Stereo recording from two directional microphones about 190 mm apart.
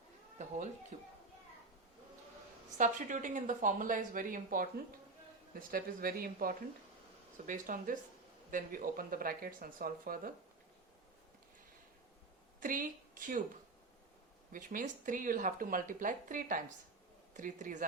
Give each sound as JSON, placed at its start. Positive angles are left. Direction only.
{"t": 0.3, "sound": "cat", "side_deg": -40}
{"t": 0.9, "sound": "a child's voice", "side_deg": -40}
{"t": 2.7, "sound": "speech", "side_deg": -40}
{"t": 12.5, "sound": "speech", "side_deg": -45}
{"t": 14.5, "sound": "speech", "side_deg": -45}